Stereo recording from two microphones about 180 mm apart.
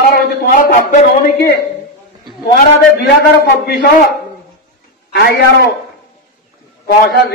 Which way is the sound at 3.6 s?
65° left (ahead or behind).